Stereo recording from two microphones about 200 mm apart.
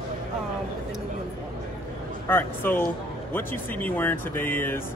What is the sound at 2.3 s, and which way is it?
Speech, 10° left (ahead or behind).